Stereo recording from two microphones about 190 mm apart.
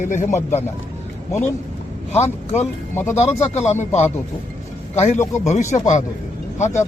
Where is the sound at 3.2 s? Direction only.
35° left (ahead or behind).